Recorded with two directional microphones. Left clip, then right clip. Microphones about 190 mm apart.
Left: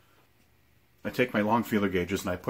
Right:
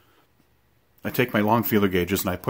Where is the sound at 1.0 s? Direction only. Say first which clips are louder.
Right 4 dB; 55° right (ahead or behind).